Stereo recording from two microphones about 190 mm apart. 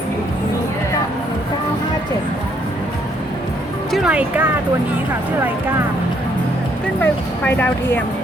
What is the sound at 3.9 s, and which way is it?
Speech, 5° right (ahead or behind).